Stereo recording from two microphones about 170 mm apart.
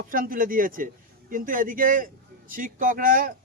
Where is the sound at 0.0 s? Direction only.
55° right (ahead or behind).